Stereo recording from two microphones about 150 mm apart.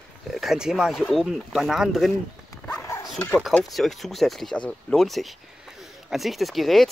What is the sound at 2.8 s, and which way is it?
Dog, 20° left (ahead or behind).